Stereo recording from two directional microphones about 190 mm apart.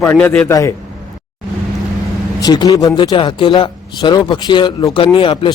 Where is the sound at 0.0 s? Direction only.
10° left (ahead or behind).